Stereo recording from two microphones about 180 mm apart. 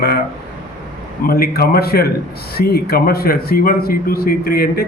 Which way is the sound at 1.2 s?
55° left (ahead or behind).